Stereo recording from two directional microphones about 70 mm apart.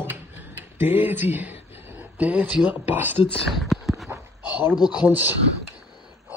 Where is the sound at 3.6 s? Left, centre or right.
Centre.